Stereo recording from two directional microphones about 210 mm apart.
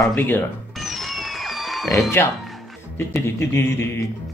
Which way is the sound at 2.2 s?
10° left (ahead or behind).